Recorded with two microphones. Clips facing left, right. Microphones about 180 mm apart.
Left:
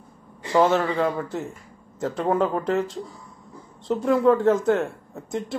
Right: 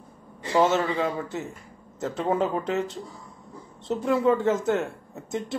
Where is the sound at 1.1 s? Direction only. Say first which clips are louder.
Left 2 dB; centre (ahead or behind).